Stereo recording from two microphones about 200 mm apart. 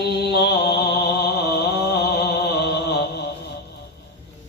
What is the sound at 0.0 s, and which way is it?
Mantra, 55° left (ahead or behind).